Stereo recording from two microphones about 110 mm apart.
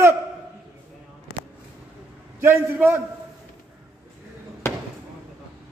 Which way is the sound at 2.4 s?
20° right (ahead or behind).